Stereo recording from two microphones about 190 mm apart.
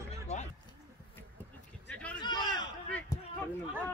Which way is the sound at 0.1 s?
35° left (ahead or behind).